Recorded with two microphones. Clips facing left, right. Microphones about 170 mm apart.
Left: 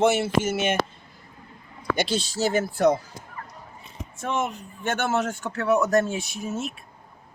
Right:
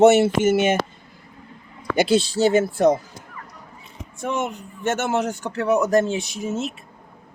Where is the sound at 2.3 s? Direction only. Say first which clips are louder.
Right 6 dB; 25° right (ahead or behind).